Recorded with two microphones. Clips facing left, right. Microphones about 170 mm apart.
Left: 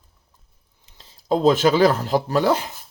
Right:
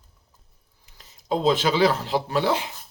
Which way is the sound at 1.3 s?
45° left (ahead or behind).